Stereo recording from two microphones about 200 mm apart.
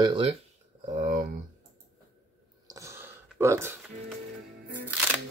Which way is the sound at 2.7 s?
15° right (ahead or behind).